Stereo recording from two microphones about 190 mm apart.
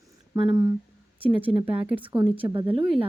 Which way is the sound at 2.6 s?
30° right (ahead or behind).